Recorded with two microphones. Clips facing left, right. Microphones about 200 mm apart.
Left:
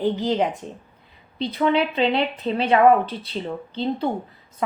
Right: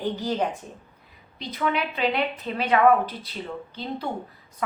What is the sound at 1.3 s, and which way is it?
Speech, 30° left (ahead or behind).